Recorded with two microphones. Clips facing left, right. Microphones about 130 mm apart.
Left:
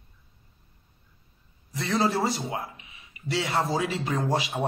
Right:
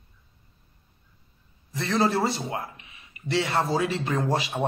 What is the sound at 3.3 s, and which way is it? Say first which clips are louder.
Speech: right 2 dB; 30° right (ahead or behind).